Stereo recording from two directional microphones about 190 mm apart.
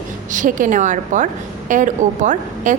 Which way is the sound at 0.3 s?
45° right (ahead or behind).